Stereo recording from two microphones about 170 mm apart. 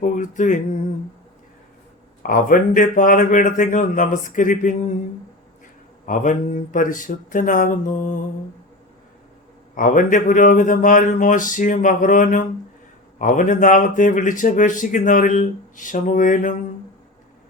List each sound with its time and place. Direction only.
0.0 s a man's voice: 45° left (ahead or behind)
2.2 s a man's voice: 55° left (ahead or behind)
6.1 s a man's voice: 50° left (ahead or behind)
9.7 s a man's voice: 50° left (ahead or behind)